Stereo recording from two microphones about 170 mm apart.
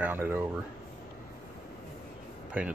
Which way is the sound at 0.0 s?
10° right (ahead or behind).